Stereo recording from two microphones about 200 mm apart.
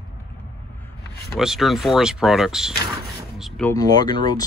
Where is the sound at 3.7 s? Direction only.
20° left (ahead or behind).